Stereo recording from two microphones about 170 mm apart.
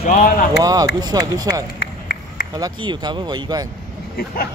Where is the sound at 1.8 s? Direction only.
65° left (ahead or behind).